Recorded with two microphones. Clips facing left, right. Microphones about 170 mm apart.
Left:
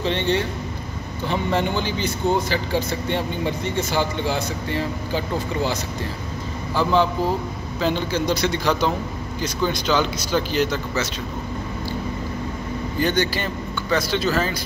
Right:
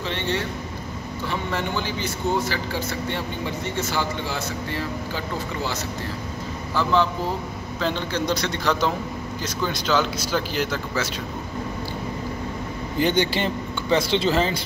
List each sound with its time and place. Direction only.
0.0 s speech: 20° left (ahead or behind); by 11.1 s 5° right (ahead or behind)
13.0 s speech: 25° right (ahead or behind)